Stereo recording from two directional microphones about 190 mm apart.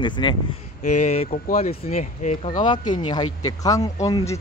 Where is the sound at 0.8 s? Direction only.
40° left (ahead or behind).